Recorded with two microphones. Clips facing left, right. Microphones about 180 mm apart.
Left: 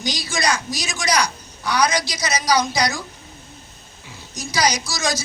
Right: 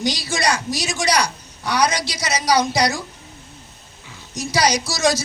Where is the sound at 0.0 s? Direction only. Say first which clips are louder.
Right 2 dB; 70° right (ahead or behind).